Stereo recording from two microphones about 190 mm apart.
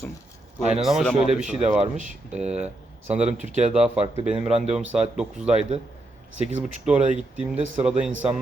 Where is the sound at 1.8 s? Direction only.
40° right (ahead or behind).